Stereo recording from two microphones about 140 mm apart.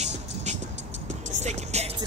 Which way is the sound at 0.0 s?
55° right (ahead or behind).